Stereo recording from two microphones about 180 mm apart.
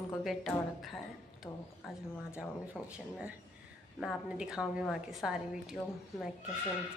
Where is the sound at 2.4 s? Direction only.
5° right (ahead or behind).